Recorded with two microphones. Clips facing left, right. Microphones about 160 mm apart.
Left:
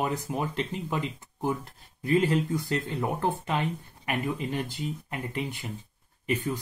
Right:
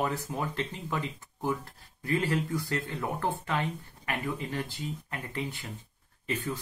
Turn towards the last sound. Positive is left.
turn(degrees=15)  # may be behind; listen again after turning